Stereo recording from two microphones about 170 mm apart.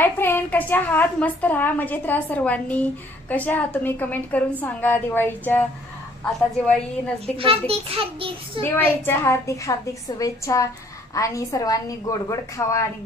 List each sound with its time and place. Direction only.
0.0 s a woman's voice: 10° left (ahead or behind)
7.3 s a child's voice: 35° right (ahead or behind)
8.6 s a woman's voice: 15° left (ahead or behind)